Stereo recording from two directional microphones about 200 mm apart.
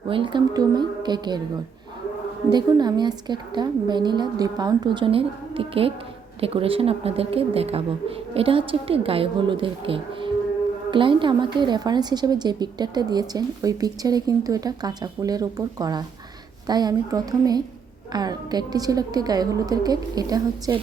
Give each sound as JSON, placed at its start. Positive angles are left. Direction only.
{"t": 0.1, "sound": "a woman's voice", "side_deg": -25}
{"t": 2.5, "sound": "a woman's voice", "side_deg": -20}